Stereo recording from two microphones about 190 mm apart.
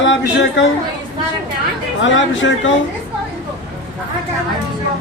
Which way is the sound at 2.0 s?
80° left.